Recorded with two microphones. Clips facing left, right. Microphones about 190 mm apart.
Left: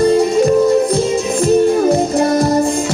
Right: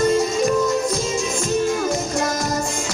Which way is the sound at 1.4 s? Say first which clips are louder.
Left 11 dB; 35° left (ahead or behind).